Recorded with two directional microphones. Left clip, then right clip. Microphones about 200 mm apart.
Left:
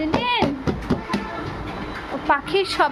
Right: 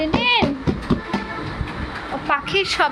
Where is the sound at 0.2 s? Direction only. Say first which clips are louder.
Right 5 dB; 20° left (ahead or behind).